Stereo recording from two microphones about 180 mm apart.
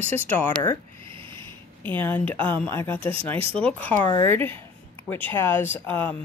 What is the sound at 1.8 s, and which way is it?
A woman's voice, 10° left (ahead or behind).